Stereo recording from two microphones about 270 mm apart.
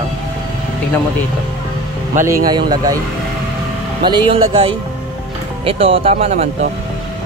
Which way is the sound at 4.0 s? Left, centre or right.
Centre.